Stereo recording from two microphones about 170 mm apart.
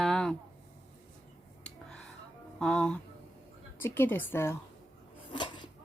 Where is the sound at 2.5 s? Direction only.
5° left (ahead or behind).